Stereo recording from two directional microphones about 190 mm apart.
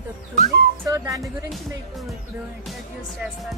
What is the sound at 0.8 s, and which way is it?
Speech, 15° right (ahead or behind).